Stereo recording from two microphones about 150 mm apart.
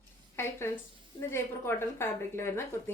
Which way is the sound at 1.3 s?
15° left (ahead or behind).